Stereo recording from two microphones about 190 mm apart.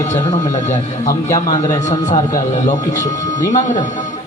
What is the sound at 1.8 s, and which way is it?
A man's voice, 40° left (ahead or behind).